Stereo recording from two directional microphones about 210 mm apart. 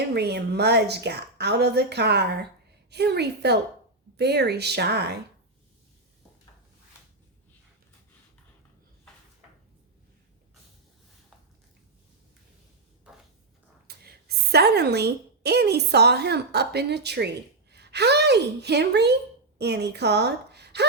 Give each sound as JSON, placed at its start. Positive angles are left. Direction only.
{"t": 0.1, "sound": "a woman's voice", "side_deg": -50}
{"t": 13.8, "sound": "a woman's voice", "side_deg": -50}